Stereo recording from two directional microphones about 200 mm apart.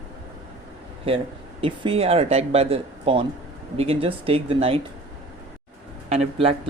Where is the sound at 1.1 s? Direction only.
25° right (ahead or behind).